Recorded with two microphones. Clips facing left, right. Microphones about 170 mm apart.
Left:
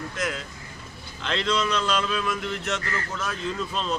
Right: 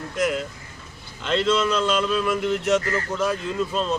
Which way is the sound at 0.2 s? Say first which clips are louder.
Right 9 dB; 5° right (ahead or behind).